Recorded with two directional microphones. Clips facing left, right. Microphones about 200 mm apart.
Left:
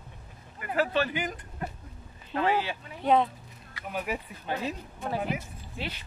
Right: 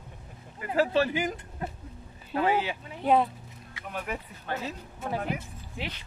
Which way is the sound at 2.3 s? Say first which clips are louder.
Right 1 dB; 15° right (ahead or behind).